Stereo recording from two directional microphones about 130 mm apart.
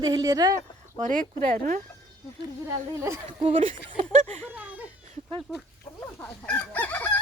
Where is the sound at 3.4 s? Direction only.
45° right (ahead or behind).